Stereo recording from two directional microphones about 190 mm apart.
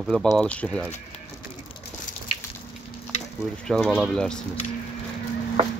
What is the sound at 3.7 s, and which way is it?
Speech, centre (ahead or behind).